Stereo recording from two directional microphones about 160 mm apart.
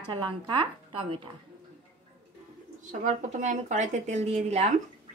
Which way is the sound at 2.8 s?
50° right (ahead or behind).